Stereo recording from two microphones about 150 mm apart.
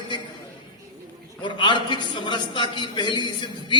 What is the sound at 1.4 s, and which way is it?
A man's voice, 35° left (ahead or behind).